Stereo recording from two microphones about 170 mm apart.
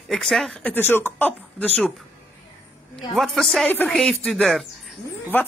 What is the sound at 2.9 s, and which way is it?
Speech, centre (ahead or behind).